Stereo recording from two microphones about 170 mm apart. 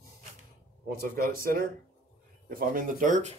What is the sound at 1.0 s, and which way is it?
Speech, 60° right (ahead or behind).